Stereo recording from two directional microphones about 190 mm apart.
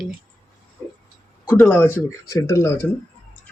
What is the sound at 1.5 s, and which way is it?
Speech, 10° left (ahead or behind).